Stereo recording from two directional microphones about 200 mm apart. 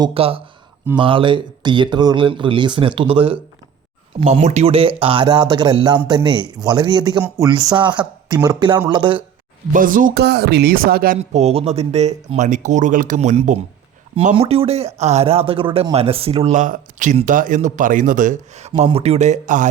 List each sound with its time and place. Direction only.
0.0 s speech: 30° right (ahead or behind)
9.7 s speech: 45° right (ahead or behind)
11.2 s speech: 30° right (ahead or behind)